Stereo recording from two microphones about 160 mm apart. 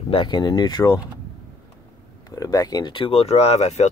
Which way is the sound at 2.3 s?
20° left (ahead or behind).